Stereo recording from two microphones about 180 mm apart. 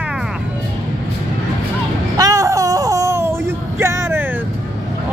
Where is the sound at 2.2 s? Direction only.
20° right (ahead or behind).